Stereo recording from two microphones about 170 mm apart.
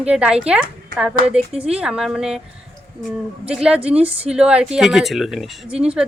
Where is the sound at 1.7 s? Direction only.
5° right (ahead or behind).